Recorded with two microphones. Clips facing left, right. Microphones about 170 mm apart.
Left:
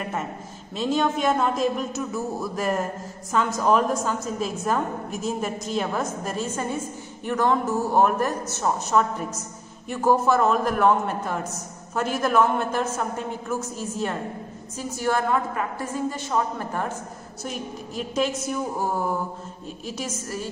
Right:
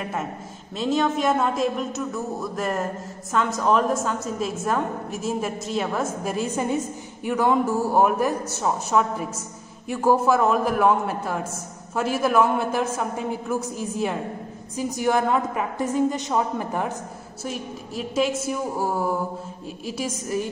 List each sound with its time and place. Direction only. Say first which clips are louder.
0.0 s a woman's voice: right 1 dB; 5° right (ahead or behind)